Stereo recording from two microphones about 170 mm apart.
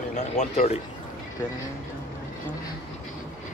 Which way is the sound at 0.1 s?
45° left (ahead or behind).